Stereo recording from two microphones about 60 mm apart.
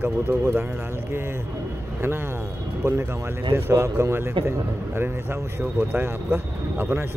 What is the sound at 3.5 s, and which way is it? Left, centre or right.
Speech, right.